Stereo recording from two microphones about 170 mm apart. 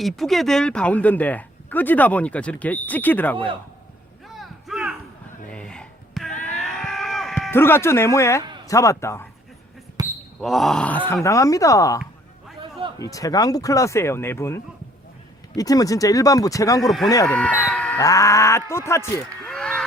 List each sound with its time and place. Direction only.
0.0 s speech: centre (ahead or behind)
4.4 s a sound: centre (ahead or behind)
7.5 s speech: 15° left (ahead or behind)
10.0 s basketball bounce: 25° right (ahead or behind)
10.4 s speech: centre (ahead or behind); by 11.9 s 20° left (ahead or behind)
13.0 s speech: 20° left (ahead or behind)
17.3 s speech: 10° left (ahead or behind)
18.0 s speech: 20° left (ahead or behind)
19.5 s a sound: 5° left (ahead or behind)